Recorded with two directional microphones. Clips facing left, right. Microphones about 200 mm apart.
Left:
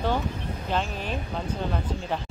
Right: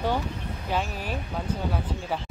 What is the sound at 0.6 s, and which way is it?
Speech, 10° right (ahead or behind).